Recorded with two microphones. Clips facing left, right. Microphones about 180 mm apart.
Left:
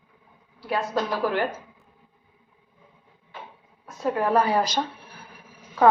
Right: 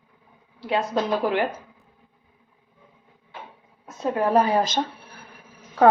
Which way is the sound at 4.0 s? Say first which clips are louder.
Right 2 dB; 20° right (ahead or behind).